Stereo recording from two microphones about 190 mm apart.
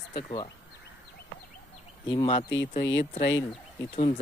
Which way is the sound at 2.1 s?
25° left (ahead or behind).